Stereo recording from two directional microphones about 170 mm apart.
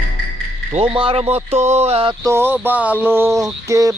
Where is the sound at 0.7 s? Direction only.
30° right (ahead or behind).